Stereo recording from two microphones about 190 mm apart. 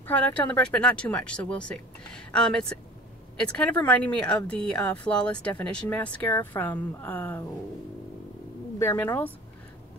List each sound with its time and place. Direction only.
0.0 s speech: 10° left (ahead or behind)
8.7 s speech: 10° left (ahead or behind)